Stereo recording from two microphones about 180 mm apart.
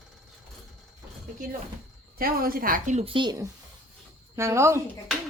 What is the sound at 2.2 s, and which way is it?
A woman's voice, 55° right (ahead or behind).